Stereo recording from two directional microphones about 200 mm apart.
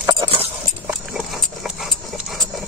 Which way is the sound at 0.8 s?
Centre (ahead or behind).